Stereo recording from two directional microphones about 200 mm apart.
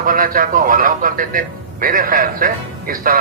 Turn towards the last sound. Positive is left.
turn(degrees=-45)  # may be behind; listen again after turning